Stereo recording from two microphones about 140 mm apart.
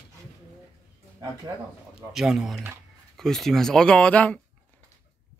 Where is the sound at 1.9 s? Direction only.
5° right (ahead or behind).